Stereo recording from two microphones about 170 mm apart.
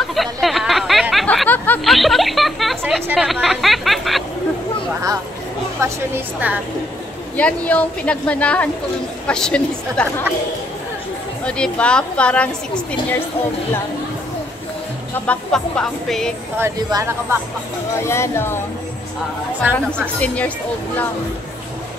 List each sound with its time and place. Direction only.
0.1 s speech: centre (ahead or behind)
5.8 s speech: 15° right (ahead or behind)
7.3 s speech: 10° left (ahead or behind)
11.4 s speech: 5° left (ahead or behind)
15.1 s speech: 5° left (ahead or behind)
16.5 s speech: 15° right (ahead or behind)
18.0 s speech: 15° left (ahead or behind)
19.6 s speech: 10° right (ahead or behind)
20.2 s speech: 10° left (ahead or behind)